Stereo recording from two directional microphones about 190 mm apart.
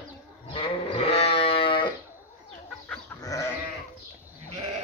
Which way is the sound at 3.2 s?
15° left (ahead or behind).